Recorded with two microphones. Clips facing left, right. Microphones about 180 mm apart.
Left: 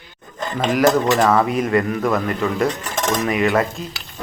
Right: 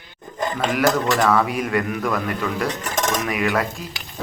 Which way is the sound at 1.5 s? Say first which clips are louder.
Left 4 dB; 5° right (ahead or behind).